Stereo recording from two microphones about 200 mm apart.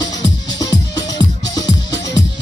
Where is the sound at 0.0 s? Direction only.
20° left (ahead or behind).